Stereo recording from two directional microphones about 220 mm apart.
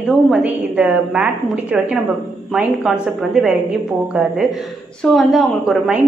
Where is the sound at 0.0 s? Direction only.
Centre (ahead or behind).